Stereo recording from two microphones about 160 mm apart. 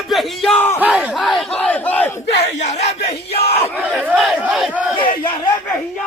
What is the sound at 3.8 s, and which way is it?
Speech, 5° right (ahead or behind).